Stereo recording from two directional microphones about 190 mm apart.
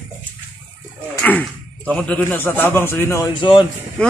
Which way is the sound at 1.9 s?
5° left (ahead or behind).